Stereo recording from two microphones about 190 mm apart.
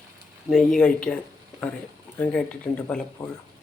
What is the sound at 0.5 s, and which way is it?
Speech, 5° left (ahead or behind).